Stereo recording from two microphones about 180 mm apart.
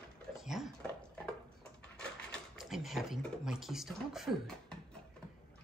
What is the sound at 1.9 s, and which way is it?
Speech, centre (ahead or behind).